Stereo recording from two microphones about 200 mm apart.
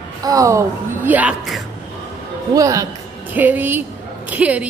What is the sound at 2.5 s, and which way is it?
Speech, 15° right (ahead or behind).